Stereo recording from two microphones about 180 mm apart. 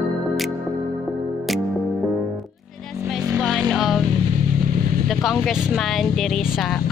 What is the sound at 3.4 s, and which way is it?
Music, centre (ahead or behind).